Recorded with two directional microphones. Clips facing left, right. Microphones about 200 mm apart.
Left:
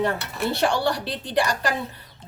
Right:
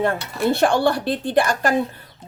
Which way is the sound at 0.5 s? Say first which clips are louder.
Right 4 dB; 50° right (ahead or behind).